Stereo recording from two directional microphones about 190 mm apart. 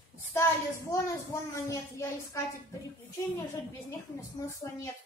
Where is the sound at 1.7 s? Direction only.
15° left (ahead or behind).